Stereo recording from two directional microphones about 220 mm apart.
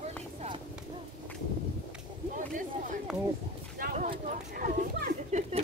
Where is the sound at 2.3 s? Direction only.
35° right (ahead or behind).